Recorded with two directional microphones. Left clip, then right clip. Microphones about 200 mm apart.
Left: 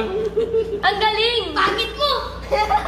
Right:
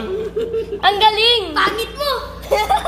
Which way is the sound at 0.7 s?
35° right (ahead or behind).